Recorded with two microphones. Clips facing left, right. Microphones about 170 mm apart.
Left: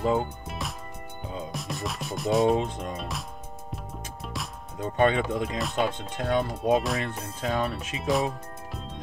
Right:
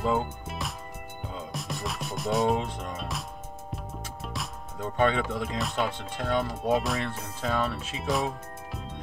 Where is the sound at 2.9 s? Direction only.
Centre (ahead or behind).